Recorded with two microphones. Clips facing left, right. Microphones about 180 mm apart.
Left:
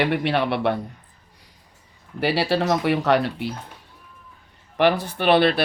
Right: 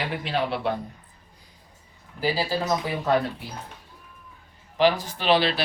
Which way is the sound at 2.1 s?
70° left (ahead or behind).